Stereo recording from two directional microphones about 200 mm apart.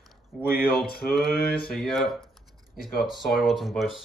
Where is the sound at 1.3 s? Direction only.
50° left (ahead or behind).